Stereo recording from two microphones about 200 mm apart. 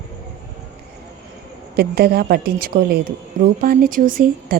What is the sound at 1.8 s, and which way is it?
A woman's voice, 50° right (ahead or behind).